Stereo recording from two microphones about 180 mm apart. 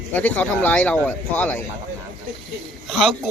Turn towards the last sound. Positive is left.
turn(degrees=0)  # may be behind; listen again after turning